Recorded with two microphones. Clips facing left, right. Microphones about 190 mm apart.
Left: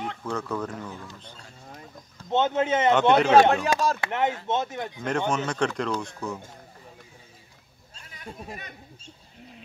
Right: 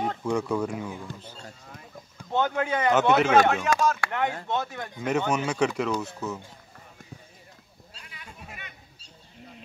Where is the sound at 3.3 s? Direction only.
35° left (ahead or behind).